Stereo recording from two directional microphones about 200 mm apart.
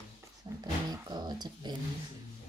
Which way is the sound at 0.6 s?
20° right (ahead or behind).